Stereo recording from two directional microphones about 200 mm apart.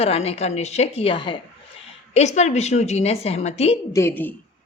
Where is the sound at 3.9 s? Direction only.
15° left (ahead or behind).